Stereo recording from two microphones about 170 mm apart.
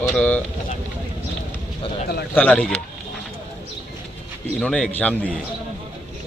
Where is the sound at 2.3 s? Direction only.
10° left (ahead or behind).